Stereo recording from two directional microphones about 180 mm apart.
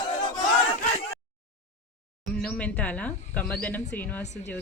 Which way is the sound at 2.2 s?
5° left (ahead or behind).